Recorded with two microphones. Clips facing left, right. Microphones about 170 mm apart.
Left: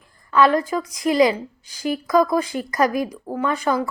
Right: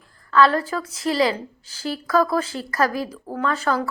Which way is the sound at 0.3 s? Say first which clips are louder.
Left 1 dB; 15° left (ahead or behind).